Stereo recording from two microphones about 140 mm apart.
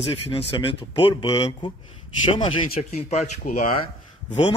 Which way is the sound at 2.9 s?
55° left (ahead or behind).